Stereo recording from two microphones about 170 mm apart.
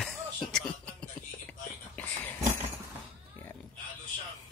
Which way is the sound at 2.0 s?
10° left (ahead or behind).